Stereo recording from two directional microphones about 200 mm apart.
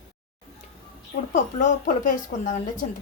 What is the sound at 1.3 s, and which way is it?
Speech, 40° left (ahead or behind).